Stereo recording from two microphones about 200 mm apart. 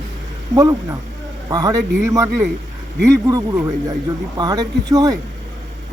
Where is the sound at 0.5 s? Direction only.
15° right (ahead or behind).